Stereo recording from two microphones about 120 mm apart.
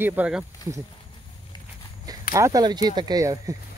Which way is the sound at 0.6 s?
35° left (ahead or behind).